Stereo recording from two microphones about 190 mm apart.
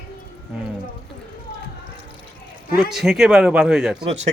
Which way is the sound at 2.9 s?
Centre (ahead or behind).